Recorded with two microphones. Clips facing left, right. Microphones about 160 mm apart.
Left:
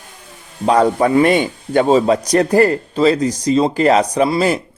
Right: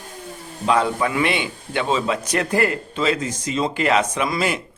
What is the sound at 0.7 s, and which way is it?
A man's voice, 40° left (ahead or behind).